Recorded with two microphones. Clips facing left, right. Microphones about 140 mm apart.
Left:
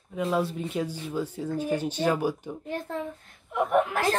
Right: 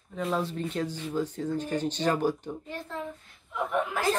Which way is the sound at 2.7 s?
50° left (ahead or behind).